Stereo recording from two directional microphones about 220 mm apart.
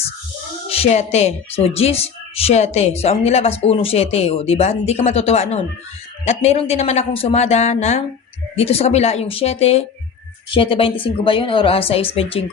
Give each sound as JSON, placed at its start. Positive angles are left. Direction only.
{"t": 0.7, "sound": "speech", "side_deg": 30}